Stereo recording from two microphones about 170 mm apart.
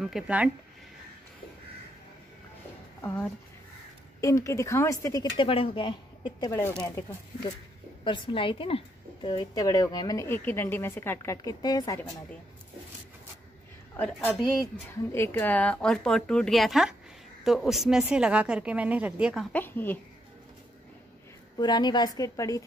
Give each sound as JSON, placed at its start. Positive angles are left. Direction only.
{"t": 0.0, "sound": "speech", "side_deg": -5}
{"t": 3.0, "sound": "a woman's voice", "side_deg": 15}
{"t": 5.5, "sound": "a woman's voice", "side_deg": 30}
{"t": 8.0, "sound": "a woman's voice", "side_deg": 30}
{"t": 13.9, "sound": "speech", "side_deg": 10}
{"t": 19.5, "sound": "speech", "side_deg": 10}
{"t": 21.5, "sound": "a woman's voice", "side_deg": 25}